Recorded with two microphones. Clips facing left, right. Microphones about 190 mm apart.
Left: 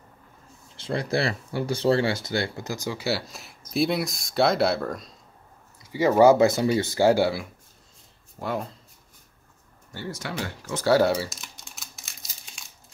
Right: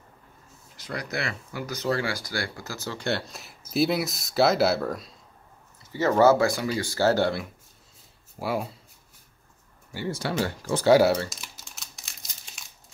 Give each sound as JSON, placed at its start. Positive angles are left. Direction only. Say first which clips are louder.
{"t": 0.7, "sound": "speech", "louder": "left 6 dB", "side_deg": 25}
{"t": 5.8, "sound": "speech", "louder": "left 3 dB", "side_deg": 10}
{"t": 8.4, "sound": "speech", "louder": "right 1 dB", "side_deg": -5}
{"t": 10.1, "sound": "speech", "louder": "right 6 dB", "side_deg": -30}
{"t": 10.9, "sound": "speech", "louder": "right 2 dB", "side_deg": -10}
{"t": 11.1, "sound": "crumpling", "louder": "left 1 dB", "side_deg": 0}